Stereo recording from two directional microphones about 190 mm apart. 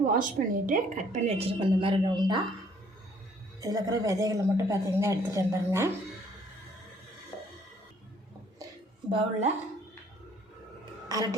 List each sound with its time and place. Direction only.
0.0 s a woman's voice: 45° right (ahead or behind); by 2.4 s 25° right (ahead or behind)
3.6 s speech: 15° right (ahead or behind)
9.0 s a woman's voice: 30° right (ahead or behind)
11.1 s speech: 20° right (ahead or behind)